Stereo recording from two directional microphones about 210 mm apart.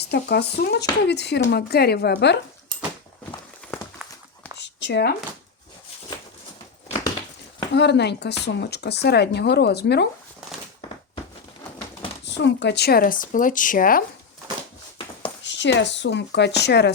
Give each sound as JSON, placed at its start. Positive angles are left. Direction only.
{"t": 0.0, "sound": "speech", "side_deg": 50}
{"t": 3.6, "sound": "run", "side_deg": 5}
{"t": 4.5, "sound": "a sound", "side_deg": 55}
{"t": 7.7, "sound": "speech", "side_deg": 55}
{"t": 12.2, "sound": "speech", "side_deg": 55}
{"t": 15.4, "sound": "speech", "side_deg": 60}